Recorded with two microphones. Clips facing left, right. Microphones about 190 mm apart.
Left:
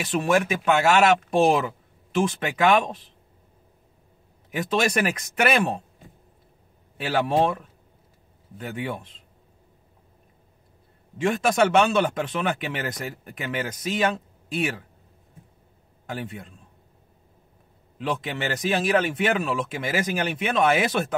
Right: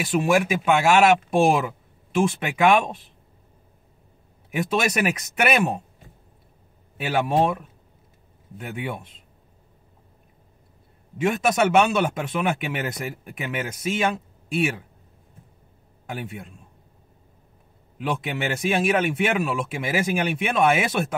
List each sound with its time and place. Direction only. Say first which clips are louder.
0.2 s speech: even; 5° right (ahead or behind)
4.5 s speech: even; 5° right (ahead or behind)
7.0 s speech: even; 10° right (ahead or behind)
11.1 s speech: even; 5° right (ahead or behind)
16.1 s speech: even; 5° right (ahead or behind)
17.9 s speech: right 1 dB; 5° right (ahead or behind)